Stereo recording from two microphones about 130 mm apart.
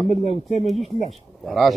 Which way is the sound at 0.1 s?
60° left (ahead or behind).